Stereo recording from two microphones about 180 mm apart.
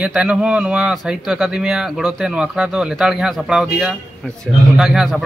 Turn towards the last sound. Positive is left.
turn(degrees=-5)  # may be behind; listen again after turning